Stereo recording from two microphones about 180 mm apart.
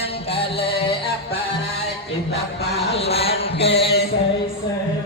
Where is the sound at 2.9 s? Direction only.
35° left (ahead or behind).